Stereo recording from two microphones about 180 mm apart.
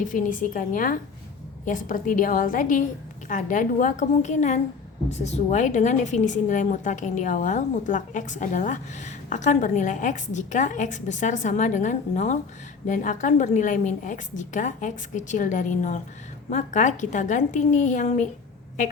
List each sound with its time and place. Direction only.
0.0 s a woman's voice: 45° left (ahead or behind)